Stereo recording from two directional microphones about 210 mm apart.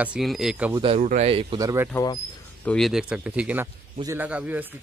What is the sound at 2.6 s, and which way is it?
A man's voice, 5° left (ahead or behind).